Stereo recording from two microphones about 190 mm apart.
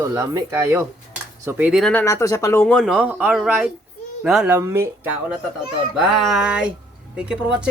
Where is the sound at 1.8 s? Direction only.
10° left (ahead or behind); by 4.9 s 15° right (ahead or behind).